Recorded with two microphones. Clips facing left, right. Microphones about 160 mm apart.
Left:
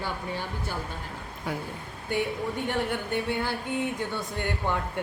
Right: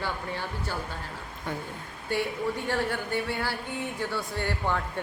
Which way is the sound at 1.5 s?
10° left (ahead or behind).